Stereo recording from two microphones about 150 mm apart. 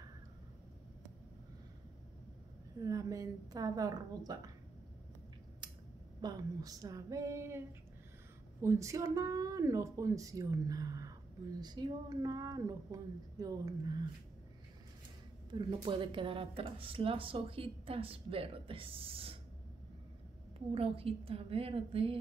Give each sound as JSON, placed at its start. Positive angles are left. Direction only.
{"t": 2.8, "sound": "speech", "side_deg": -25}
{"t": 6.2, "sound": "speech", "side_deg": -25}
{"t": 15.5, "sound": "speech", "side_deg": -35}
{"t": 20.5, "sound": "speech", "side_deg": -40}